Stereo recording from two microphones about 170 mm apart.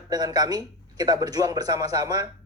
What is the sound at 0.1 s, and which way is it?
A man's voice, 20° right (ahead or behind).